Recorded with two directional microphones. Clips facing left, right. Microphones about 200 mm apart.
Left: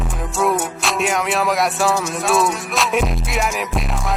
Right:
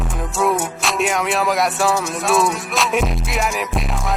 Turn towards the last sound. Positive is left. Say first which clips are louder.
# even
turn(degrees=0)  # may be behind; listen again after turning